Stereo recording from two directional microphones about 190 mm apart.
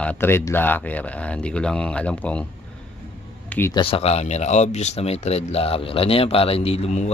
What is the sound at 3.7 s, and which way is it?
A man's voice, 30° left (ahead or behind).